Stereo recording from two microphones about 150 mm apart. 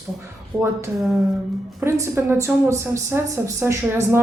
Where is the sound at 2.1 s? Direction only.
15° right (ahead or behind).